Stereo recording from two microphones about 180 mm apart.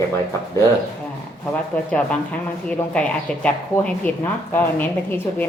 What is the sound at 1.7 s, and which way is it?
Speech, 5° left (ahead or behind).